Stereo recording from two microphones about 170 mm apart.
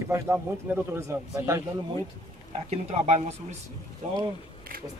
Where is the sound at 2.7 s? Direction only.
40° right (ahead or behind).